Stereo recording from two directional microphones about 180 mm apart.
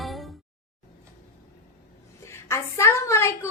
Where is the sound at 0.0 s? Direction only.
Centre (ahead or behind).